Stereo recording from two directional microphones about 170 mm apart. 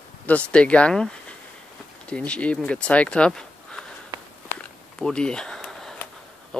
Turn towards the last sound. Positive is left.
turn(degrees=5)  # may be behind; listen again after turning